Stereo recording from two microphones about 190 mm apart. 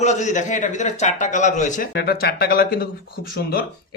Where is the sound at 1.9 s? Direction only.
55° left (ahead or behind).